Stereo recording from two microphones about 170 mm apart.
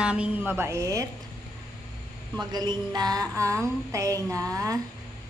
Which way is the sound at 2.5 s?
25° right (ahead or behind).